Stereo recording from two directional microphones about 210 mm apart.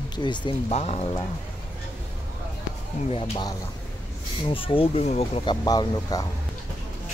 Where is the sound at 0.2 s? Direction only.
20° left (ahead or behind).